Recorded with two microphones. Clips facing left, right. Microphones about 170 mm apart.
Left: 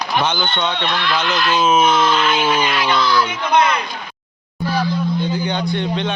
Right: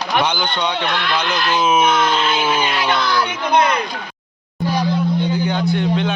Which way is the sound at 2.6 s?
25° right (ahead or behind).